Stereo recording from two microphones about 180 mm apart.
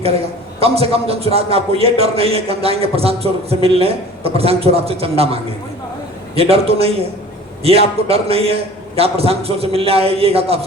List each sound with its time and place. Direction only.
0.6 s a man's voice: 35° right (ahead or behind)